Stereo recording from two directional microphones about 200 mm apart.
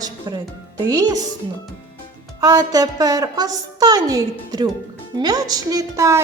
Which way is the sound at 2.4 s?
15° right (ahead or behind).